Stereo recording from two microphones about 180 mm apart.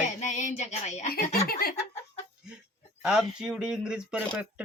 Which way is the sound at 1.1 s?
60° left (ahead or behind).